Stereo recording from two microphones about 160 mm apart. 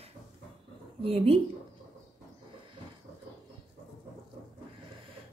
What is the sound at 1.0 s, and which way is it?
Speech, 35° right (ahead or behind).